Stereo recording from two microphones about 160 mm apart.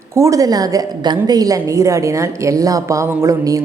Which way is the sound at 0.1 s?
20° right (ahead or behind).